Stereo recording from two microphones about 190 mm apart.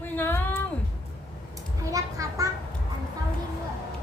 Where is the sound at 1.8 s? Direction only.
15° right (ahead or behind).